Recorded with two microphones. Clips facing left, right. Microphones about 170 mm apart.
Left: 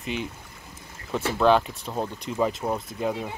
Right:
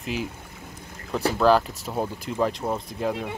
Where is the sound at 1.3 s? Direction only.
Centre (ahead or behind).